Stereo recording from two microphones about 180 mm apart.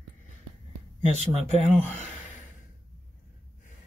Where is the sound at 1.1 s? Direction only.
40° left (ahead or behind).